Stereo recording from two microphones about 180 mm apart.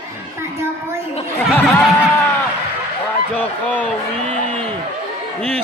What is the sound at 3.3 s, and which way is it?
Speech, 10° left (ahead or behind).